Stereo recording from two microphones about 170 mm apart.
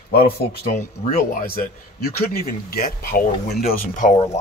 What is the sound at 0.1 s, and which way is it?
Speech, 60° left (ahead or behind).